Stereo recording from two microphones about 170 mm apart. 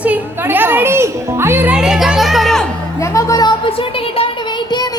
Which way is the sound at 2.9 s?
20° left (ahead or behind).